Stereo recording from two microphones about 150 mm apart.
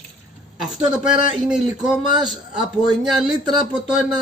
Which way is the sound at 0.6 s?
5° right (ahead or behind).